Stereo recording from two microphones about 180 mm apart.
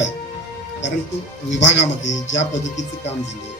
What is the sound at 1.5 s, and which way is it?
Speech, 85° left.